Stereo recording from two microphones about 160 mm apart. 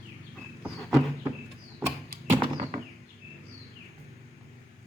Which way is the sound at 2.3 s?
35° right (ahead or behind).